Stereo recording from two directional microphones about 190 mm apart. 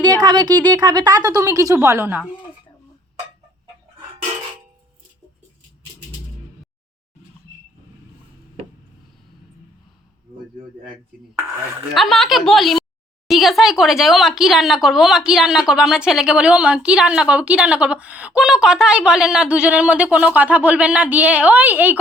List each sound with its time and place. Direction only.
0.2 s a woman's voice: 20° right (ahead or behind)
11.9 s speech: centre (ahead or behind)